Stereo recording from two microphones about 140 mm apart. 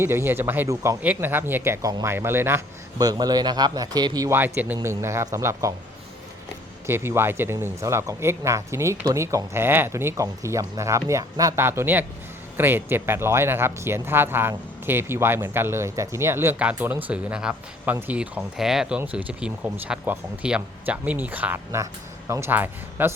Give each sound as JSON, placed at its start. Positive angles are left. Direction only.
{"t": 0.0, "sound": "speech", "side_deg": -15}
{"t": 2.1, "sound": "speech", "side_deg": -15}
{"t": 4.3, "sound": "speech", "side_deg": -15}
{"t": 6.8, "sound": "speech", "side_deg": -15}